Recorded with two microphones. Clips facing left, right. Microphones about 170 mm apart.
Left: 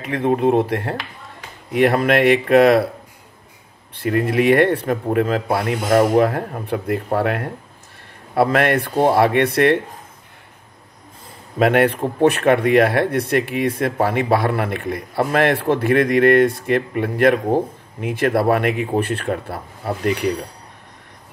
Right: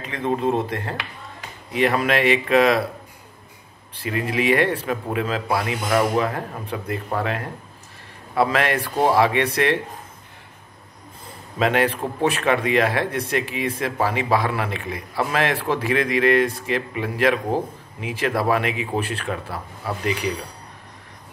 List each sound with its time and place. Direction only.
0.0 s speech: 60° left (ahead or behind)
4.0 s speech: 55° left (ahead or behind)
11.5 s speech: 60° left (ahead or behind)